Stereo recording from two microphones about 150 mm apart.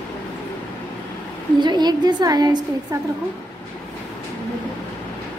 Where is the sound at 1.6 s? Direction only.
30° right (ahead or behind).